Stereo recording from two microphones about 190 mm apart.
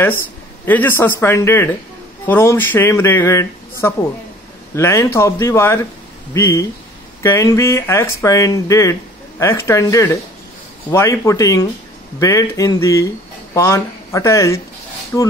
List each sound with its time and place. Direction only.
0.7 s speech: 10° left (ahead or behind)